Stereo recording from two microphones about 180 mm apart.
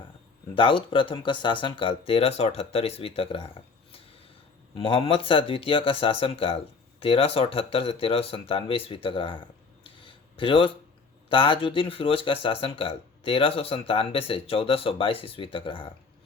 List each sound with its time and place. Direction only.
0.5 s speech: 30° left (ahead or behind)
4.7 s speech: 30° left (ahead or behind)
9.8 s a sound: 30° left (ahead or behind)
11.3 s speech: 30° left (ahead or behind)